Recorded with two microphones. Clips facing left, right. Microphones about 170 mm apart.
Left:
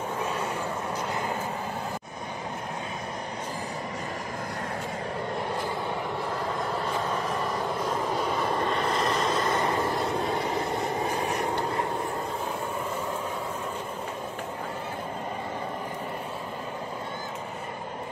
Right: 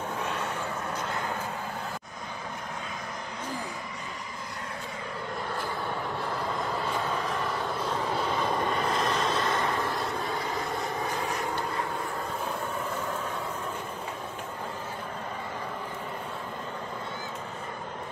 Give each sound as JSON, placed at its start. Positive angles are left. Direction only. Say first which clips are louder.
{"t": 6.4, "sound": "vehicle", "louder": "left 1 dB", "side_deg": 5}